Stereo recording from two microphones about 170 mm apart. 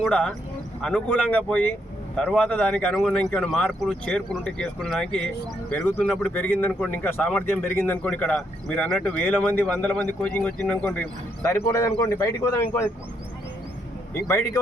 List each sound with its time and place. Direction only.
0.0 s a man's voice: 5° left (ahead or behind)
14.1 s a man's voice: 15° left (ahead or behind)